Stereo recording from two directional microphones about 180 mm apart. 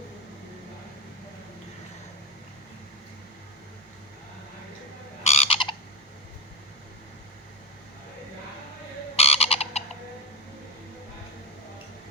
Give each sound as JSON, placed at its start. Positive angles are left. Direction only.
{"t": 5.2, "sound": "frog", "side_deg": 35}
{"t": 9.1, "sound": "frog", "side_deg": 35}